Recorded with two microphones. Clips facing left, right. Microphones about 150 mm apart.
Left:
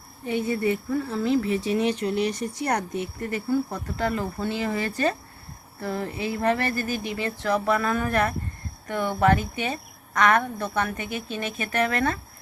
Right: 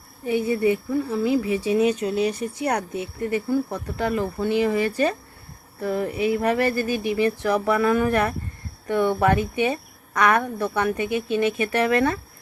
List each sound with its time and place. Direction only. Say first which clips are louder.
0.3 s speech: right 4 dB; 15° right (ahead or behind)